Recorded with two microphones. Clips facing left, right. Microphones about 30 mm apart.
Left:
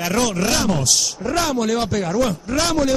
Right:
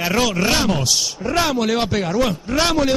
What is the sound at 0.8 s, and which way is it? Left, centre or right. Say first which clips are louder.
A man's voice: even; centre.